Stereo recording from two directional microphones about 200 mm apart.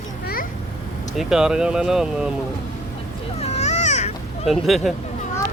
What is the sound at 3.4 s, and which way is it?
Baby cry, 35° left (ahead or behind).